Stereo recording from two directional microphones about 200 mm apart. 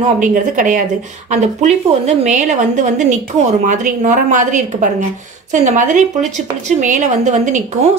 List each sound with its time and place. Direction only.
0.2 s a woman's voice: 40° right (ahead or behind)